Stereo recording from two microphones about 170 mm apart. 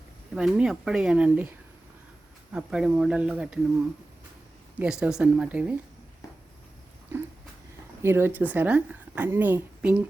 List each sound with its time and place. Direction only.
0.3 s speech: 5° right (ahead or behind)
4.8 s speech: 5° right (ahead or behind)
8.0 s a woman's voice: 15° right (ahead or behind)